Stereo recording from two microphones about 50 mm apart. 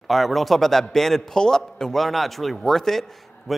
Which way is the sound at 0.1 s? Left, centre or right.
Centre.